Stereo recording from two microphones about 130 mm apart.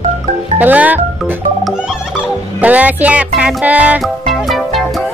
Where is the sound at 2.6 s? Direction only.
10° right (ahead or behind).